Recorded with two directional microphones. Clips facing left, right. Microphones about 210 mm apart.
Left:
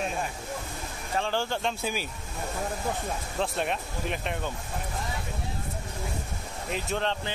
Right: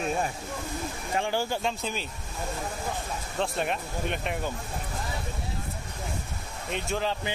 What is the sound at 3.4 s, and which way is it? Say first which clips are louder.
Speech: right 1 dB; centre (ahead or behind).